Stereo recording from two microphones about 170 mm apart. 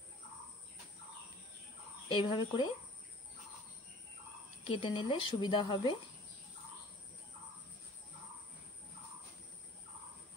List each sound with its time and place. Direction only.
2.0 s a woman's voice: 30° left (ahead or behind)
4.6 s a woman's voice: 30° left (ahead or behind)